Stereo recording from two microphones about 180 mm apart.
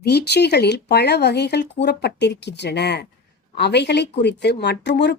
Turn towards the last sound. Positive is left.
turn(degrees=75)  # may be behind; listen again after turning